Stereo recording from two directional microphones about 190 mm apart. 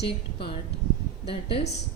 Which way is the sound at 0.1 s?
25° left (ahead or behind).